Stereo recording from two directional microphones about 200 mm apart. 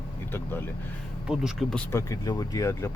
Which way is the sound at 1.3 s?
Centre (ahead or behind).